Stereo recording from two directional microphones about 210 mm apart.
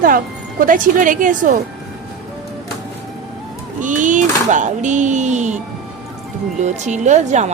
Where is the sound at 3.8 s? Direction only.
40° right (ahead or behind).